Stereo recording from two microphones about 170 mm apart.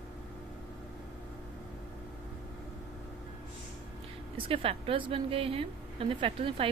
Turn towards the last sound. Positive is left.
turn(degrees=-35)  # may be behind; listen again after turning